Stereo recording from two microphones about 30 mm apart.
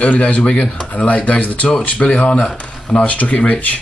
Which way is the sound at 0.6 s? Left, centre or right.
Left.